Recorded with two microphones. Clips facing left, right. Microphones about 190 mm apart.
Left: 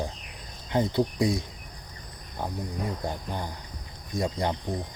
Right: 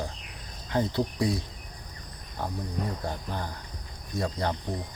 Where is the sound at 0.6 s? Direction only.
20° left (ahead or behind).